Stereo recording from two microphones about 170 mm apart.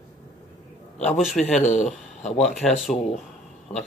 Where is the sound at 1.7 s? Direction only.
45° left (ahead or behind).